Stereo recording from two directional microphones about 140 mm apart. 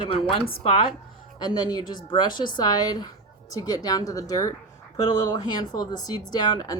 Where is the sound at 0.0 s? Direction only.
40° left (ahead or behind).